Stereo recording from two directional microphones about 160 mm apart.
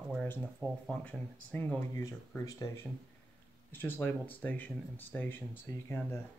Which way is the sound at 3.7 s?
15° left (ahead or behind).